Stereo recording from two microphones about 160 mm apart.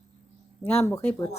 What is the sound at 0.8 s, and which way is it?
Speech, 15° left (ahead or behind).